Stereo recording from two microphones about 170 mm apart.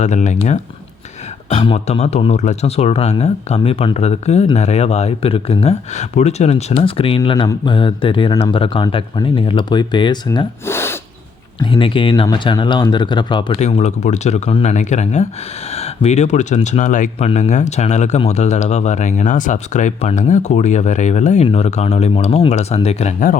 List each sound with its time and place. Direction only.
0.0 s speech: 45° left (ahead or behind); by 10.4 s 25° left (ahead or behind)
10.7 s snort: 15° left (ahead or behind)
11.6 s speech: 30° left (ahead or behind)
13.6 s speech: 40° left (ahead or behind)